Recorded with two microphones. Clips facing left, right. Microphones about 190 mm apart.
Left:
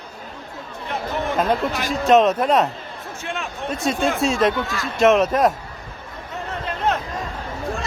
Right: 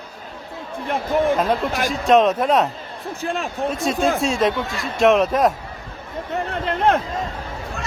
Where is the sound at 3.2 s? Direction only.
35° right (ahead or behind).